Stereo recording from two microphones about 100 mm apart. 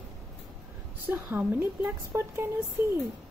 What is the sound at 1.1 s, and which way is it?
Speech, 20° right (ahead or behind).